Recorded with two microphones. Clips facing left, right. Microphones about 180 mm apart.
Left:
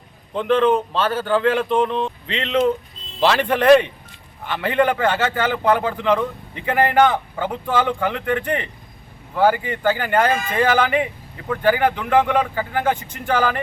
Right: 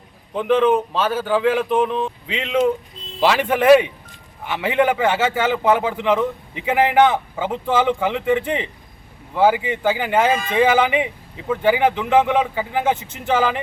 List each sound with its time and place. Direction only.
0.3 s a man's voice: 10° right (ahead or behind)
13.1 s speech: 25° right (ahead or behind)
13.3 s a man's voice: 5° right (ahead or behind)